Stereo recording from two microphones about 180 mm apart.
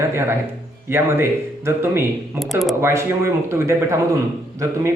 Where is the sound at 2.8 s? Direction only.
15° right (ahead or behind).